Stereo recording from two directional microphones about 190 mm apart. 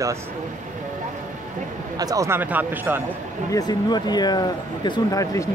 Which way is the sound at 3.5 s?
20° left (ahead or behind).